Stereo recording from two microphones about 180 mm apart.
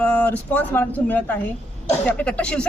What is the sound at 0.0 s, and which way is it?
A man's voice, 5° left (ahead or behind).